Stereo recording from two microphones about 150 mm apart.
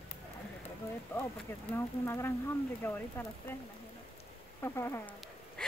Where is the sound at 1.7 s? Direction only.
15° left (ahead or behind).